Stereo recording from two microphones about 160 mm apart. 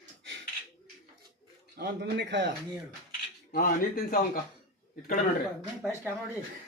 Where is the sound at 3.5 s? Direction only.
70° left (ahead or behind).